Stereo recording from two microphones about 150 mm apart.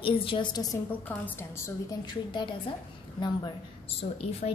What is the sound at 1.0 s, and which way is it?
Speech, 15° left (ahead or behind).